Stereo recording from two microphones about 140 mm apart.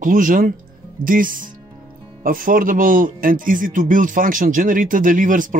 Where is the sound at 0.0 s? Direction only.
75° right (ahead or behind).